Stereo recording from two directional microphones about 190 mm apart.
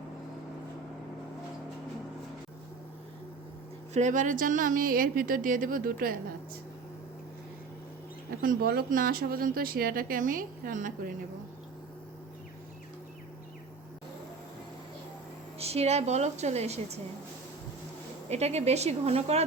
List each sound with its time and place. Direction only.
3.9 s speech: 40° right (ahead or behind)
8.4 s speech: 50° right (ahead or behind)
15.5 s a woman's voice: 30° right (ahead or behind)
18.3 s a woman's voice: 35° right (ahead or behind)